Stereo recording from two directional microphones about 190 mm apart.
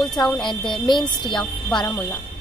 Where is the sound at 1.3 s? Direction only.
5° left (ahead or behind).